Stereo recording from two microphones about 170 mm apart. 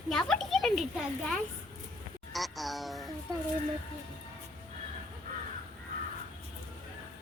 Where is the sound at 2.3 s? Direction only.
Centre (ahead or behind).